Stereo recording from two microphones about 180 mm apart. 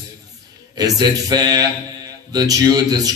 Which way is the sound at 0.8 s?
20° right (ahead or behind).